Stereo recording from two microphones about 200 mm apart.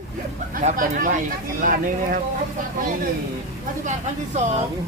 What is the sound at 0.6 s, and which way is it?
Speech, 40° right (ahead or behind).